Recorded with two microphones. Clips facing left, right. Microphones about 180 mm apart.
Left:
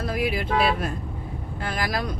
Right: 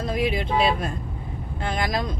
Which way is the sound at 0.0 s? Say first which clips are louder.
Right 1 dB; 25° right (ahead or behind).